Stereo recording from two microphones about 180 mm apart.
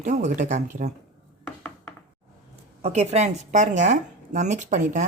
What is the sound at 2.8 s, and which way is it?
Speech, 35° right (ahead or behind).